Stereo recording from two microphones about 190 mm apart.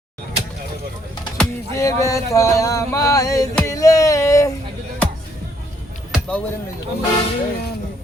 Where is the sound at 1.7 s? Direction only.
15° left (ahead or behind).